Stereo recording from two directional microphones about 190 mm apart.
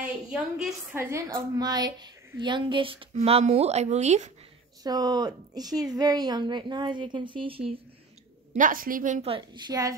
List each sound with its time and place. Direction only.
0.0 s a sound: 5° right (ahead or behind)
0.9 s a woman's voice: 15° right (ahead or behind); by 4.3 s 35° right (ahead or behind)
4.8 s a woman's voice: 20° right (ahead or behind)
8.5 s a woman's voice: 45° right (ahead or behind); by 9.9 s 20° right (ahead or behind)